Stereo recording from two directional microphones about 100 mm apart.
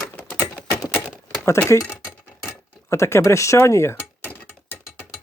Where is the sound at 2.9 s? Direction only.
30° left (ahead or behind).